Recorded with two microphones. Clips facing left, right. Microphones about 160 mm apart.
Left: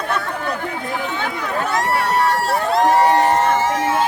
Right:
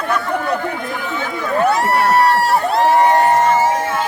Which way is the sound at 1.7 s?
65° right (ahead or behind).